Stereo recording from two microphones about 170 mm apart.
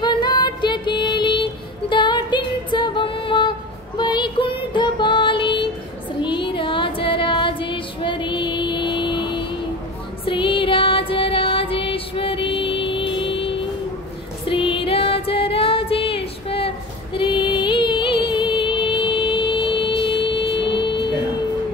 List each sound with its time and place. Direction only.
0.0 s music: 25° left (ahead or behind)
14.5 s female singing: 30° left (ahead or behind)
20.0 s music: 30° left (ahead or behind)